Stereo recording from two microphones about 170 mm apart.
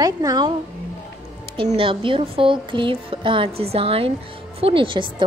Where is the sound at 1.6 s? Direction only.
30° right (ahead or behind).